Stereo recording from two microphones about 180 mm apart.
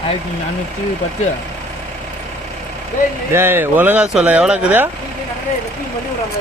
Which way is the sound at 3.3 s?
15° right (ahead or behind).